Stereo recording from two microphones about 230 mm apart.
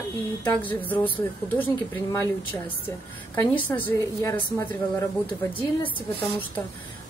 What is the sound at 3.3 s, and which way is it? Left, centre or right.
A woman's voice, centre.